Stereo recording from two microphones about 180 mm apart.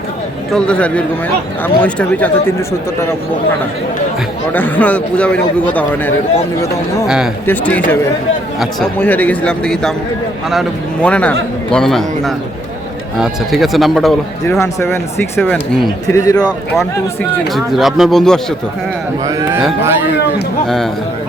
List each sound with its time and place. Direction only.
0.5 s speech: 5° left (ahead or behind)
4.5 s speech: 10° left (ahead or behind)
7.4 s speech: 10° left (ahead or behind)
15.4 s speech: 5° left (ahead or behind)
16.1 s speech: 20° left (ahead or behind)
17.3 s speech: centre (ahead or behind)
19.2 s speech: 15° right (ahead or behind)
20.7 s speech: centre (ahead or behind)